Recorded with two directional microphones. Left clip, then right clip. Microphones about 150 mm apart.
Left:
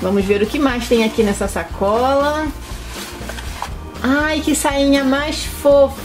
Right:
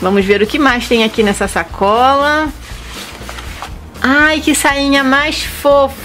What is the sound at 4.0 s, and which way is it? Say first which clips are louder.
A woman's voice: right 7 dB; 30° right (ahead or behind).